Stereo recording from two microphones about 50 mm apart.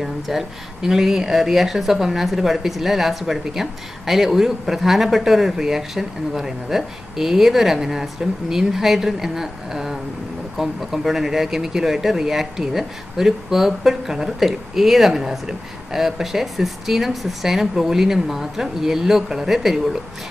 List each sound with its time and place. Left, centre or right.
0.0 s speech: centre